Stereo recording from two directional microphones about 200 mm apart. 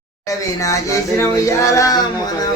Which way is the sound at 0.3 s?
15° left (ahead or behind).